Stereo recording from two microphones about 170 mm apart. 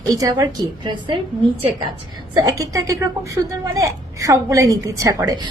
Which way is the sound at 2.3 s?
20° right (ahead or behind).